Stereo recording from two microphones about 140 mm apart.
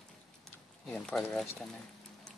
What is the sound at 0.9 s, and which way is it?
Speech, 5° left (ahead or behind).